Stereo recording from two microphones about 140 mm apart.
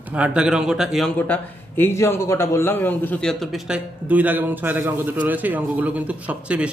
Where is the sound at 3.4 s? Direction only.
Centre (ahead or behind).